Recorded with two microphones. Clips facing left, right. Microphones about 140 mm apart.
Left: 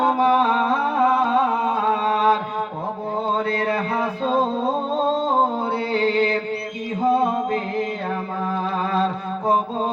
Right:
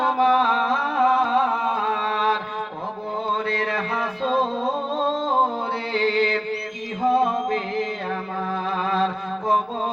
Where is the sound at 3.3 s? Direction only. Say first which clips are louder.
Left 3 dB; 40° left (ahead or behind).